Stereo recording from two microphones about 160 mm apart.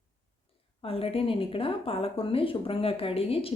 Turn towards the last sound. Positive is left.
turn(degrees=35)  # may be behind; listen again after turning